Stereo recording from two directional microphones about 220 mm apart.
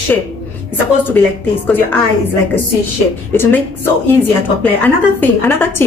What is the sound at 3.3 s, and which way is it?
Speech, 10° left (ahead or behind).